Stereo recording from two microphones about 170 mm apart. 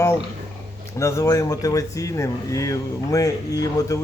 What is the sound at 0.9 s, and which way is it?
Speech, 15° left (ahead or behind).